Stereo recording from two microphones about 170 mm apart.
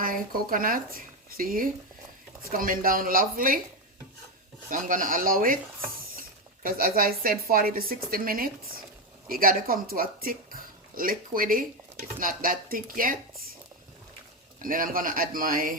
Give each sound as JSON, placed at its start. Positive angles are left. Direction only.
{"t": 0.0, "sound": "speech", "side_deg": -55}
{"t": 4.7, "sound": "speech", "side_deg": -50}
{"t": 14.6, "sound": "speech", "side_deg": -55}